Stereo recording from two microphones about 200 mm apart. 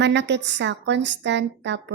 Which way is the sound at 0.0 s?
60° right (ahead or behind).